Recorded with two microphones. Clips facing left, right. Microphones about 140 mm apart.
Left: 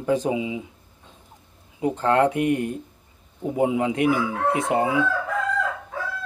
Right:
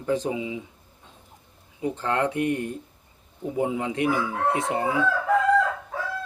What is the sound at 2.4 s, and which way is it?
Speech, 15° left (ahead or behind).